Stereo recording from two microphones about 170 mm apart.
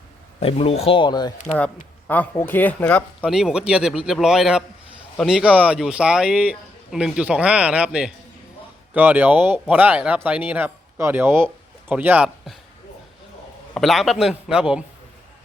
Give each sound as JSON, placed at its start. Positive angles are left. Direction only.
{"t": 0.3, "sound": "speech", "side_deg": 35}
{"t": 2.0, "sound": "speech", "side_deg": 10}
{"t": 3.2, "sound": "a man's voice", "side_deg": -5}
{"t": 13.7, "sound": "a man's voice", "side_deg": 0}